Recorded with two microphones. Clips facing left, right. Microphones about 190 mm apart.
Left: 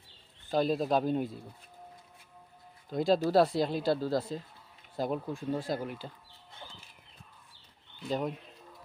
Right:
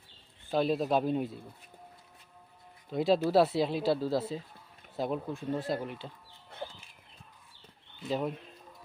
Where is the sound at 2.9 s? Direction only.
5° right (ahead or behind).